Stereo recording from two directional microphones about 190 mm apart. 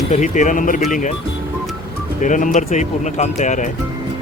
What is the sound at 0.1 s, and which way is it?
Speech, 40° left (ahead or behind).